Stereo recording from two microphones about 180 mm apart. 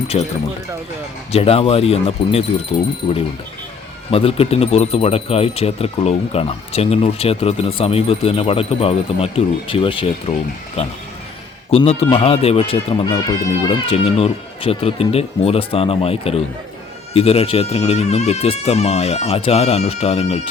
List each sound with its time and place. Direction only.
0.1 s speech: 35° left (ahead or behind)
4.1 s speech: 30° left (ahead or behind)